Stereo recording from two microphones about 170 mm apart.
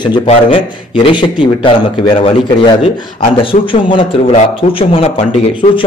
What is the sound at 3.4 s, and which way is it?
A man's voice, 30° left (ahead or behind).